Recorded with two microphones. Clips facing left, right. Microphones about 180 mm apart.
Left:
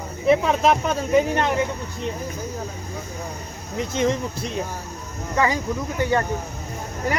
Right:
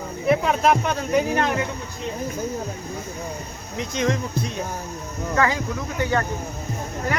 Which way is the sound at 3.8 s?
Centre (ahead or behind).